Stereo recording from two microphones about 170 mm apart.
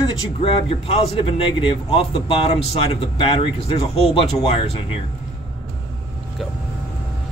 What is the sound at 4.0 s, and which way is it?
A man's voice, 35° left (ahead or behind).